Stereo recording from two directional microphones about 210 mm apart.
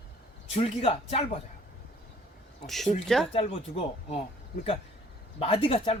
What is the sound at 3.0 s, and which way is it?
Speech, centre (ahead or behind).